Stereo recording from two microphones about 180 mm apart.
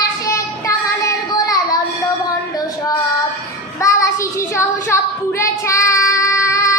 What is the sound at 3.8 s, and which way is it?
Child singing, 15° left (ahead or behind).